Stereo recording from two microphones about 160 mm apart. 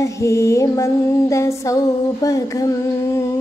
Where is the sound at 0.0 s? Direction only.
20° left (ahead or behind).